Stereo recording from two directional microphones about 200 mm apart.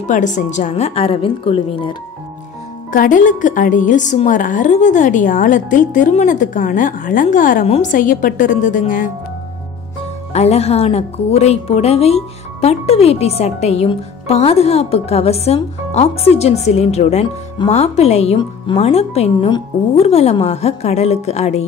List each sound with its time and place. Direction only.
0.1 s a woman's voice: 40° left (ahead or behind)
2.9 s a woman's voice: 40° left (ahead or behind)
10.3 s a woman's voice: 30° left (ahead or behind)